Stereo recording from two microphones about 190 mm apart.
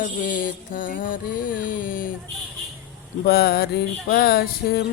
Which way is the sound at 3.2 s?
55° left (ahead or behind).